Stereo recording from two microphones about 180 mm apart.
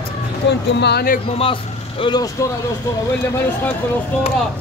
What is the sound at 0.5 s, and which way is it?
Speech, 70° left (ahead or behind).